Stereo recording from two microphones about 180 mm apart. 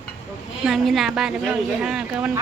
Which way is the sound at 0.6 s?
Centre (ahead or behind).